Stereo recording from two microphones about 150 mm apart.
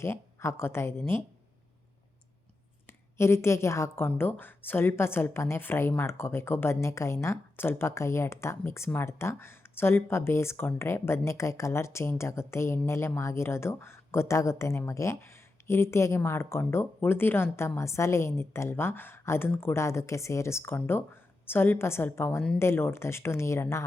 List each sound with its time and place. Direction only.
0.0 s a woman's voice: 15° left (ahead or behind)
2.8 s a woman's voice: 15° left (ahead or behind)